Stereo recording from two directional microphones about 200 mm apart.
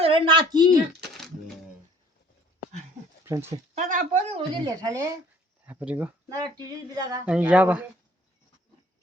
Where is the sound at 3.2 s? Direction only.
15° right (ahead or behind).